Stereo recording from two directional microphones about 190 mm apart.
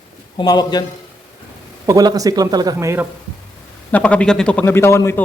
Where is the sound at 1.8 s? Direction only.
20° right (ahead or behind).